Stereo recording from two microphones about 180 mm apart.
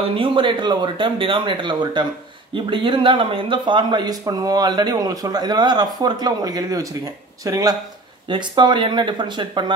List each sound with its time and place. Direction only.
0.1 s speech: 30° right (ahead or behind)